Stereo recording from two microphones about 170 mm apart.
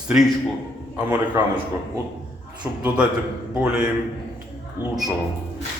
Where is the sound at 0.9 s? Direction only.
10° right (ahead or behind).